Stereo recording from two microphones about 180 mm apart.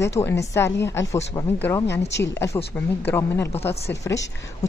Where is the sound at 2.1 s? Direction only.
75° left (ahead or behind).